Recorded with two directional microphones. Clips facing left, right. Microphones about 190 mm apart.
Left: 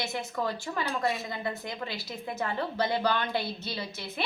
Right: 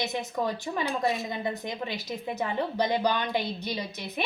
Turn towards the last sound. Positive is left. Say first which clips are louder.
# right 2 dB
turn(degrees=-15)  # may be behind; listen again after turning